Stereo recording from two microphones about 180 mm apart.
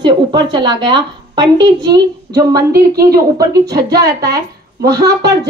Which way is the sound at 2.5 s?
60° right (ahead or behind).